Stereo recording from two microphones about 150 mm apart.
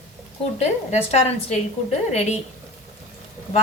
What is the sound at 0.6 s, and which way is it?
A woman's voice, 45° left (ahead or behind).